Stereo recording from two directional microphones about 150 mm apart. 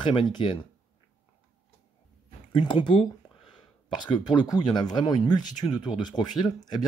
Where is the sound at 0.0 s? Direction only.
30° left (ahead or behind).